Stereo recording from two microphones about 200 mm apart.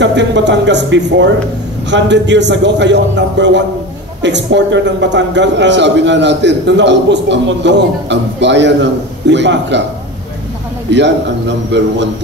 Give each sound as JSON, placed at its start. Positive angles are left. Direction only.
{"t": 0.0, "sound": "a man's voice", "side_deg": -60}
{"t": 10.9, "sound": "a man's voice", "side_deg": -60}